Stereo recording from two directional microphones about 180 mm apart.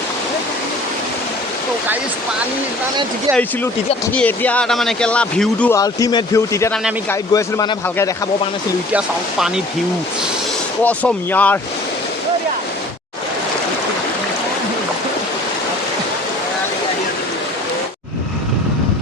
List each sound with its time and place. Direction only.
4.1 s speech: 10° left (ahead or behind)
5.7 s speech: 20° left (ahead or behind)
8.9 s speech: 5° right (ahead or behind)
10.8 s speech: 10° left (ahead or behind)